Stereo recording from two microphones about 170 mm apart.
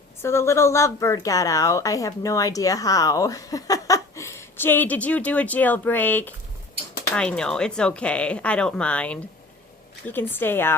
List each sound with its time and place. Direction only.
0.2 s a woman's voice: 15° left (ahead or behind)